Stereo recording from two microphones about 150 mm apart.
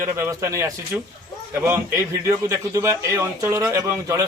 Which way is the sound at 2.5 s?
20° right (ahead or behind).